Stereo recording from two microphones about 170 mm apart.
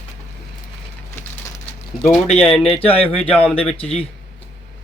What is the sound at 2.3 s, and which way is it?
Speech, 35° left (ahead or behind).